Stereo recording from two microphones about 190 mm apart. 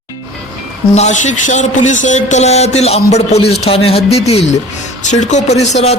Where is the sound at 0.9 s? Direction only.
35° left (ahead or behind).